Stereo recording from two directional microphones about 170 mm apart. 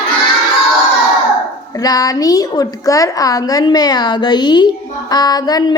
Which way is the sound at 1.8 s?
20° left (ahead or behind).